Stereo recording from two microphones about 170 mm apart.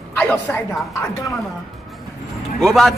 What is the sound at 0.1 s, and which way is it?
A woman's voice, 10° left (ahead or behind).